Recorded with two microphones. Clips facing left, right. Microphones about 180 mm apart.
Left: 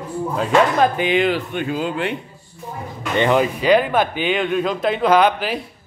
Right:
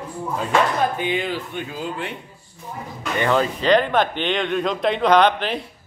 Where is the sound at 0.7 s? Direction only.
90° left.